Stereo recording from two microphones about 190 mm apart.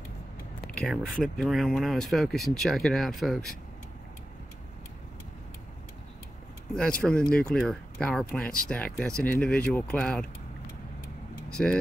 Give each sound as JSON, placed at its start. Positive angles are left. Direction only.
{"t": 0.7, "sound": "speech", "side_deg": 5}
{"t": 6.7, "sound": "speech", "side_deg": 5}
{"t": 11.6, "sound": "speech", "side_deg": 5}